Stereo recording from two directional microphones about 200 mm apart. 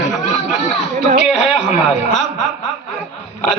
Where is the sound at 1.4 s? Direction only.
40° left (ahead or behind).